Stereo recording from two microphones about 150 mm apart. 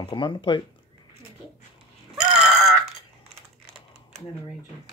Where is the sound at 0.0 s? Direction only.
30° left (ahead or behind).